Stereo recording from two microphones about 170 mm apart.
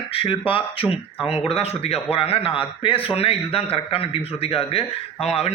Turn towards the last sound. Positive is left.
turn(degrees=35)  # may be behind; listen again after turning